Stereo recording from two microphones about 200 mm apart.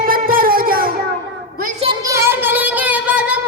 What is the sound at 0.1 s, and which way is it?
Music, 45° right (ahead or behind).